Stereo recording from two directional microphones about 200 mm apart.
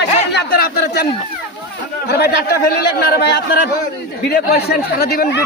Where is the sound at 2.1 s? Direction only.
55° left (ahead or behind).